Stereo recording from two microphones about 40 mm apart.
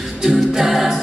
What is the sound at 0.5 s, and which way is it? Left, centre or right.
A capella, centre.